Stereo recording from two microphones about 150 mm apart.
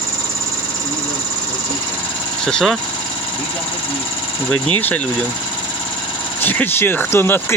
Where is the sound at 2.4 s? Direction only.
Centre (ahead or behind).